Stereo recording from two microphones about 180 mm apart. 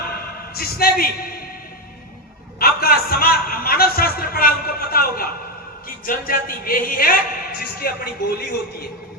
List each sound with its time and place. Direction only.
0.5 s a man's voice: 55° left (ahead or behind)
2.6 s a man's voice: 55° left (ahead or behind)